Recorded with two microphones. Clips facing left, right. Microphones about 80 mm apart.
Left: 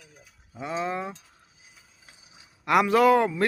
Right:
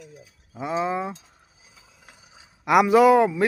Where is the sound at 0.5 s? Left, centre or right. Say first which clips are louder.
Right 4 dB; centre.